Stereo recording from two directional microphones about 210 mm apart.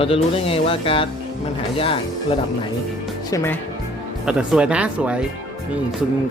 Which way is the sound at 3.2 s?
15° left (ahead or behind).